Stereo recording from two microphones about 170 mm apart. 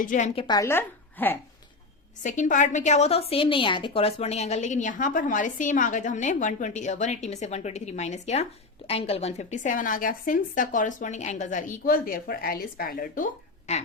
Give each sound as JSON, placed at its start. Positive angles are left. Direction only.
{"t": 0.0, "sound": "a woman's voice", "side_deg": 50}
{"t": 0.3, "sound": "a woman's voice", "side_deg": 25}
{"t": 2.2, "sound": "a woman's voice", "side_deg": 45}